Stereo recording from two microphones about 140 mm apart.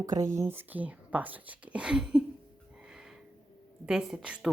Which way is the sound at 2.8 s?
5° right (ahead or behind).